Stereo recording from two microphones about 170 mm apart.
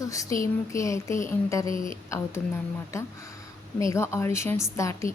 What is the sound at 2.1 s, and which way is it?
A woman's voice, 15° left (ahead or behind).